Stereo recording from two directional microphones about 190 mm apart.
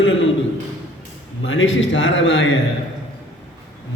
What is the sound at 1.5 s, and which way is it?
A man's voice, 90° left.